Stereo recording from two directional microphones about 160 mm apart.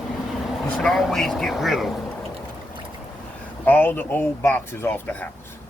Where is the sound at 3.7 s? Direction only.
10° left (ahead or behind).